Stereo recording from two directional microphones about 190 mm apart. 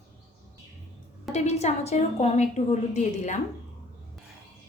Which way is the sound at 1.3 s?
35° left (ahead or behind).